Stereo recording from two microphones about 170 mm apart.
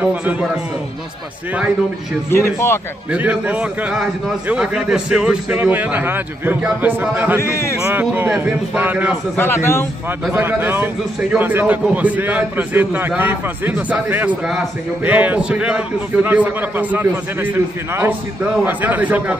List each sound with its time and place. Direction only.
0.0 s a man's voice: 10° right (ahead or behind)
2.3 s a man's voice: 15° left (ahead or behind)
3.1 s a man's voice: 10° right (ahead or behind)
7.3 s a man's voice: 15° left (ahead or behind)
7.8 s a man's voice: 10° right (ahead or behind)
9.4 s a man's voice: 15° left (ahead or behind)
10.3 s a man's voice: 10° right (ahead or behind)